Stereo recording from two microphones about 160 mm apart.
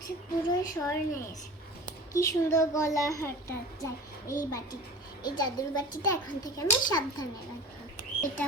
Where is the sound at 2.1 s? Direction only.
20° left (ahead or behind).